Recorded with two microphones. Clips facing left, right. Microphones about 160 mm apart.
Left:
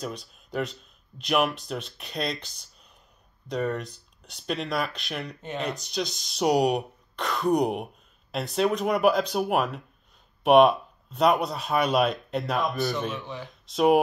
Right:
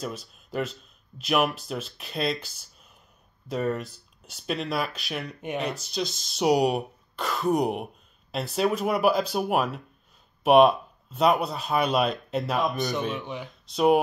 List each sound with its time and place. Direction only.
0.0 s speech: centre (ahead or behind)
13.2 s speech: 20° right (ahead or behind)
13.7 s speech: centre (ahead or behind)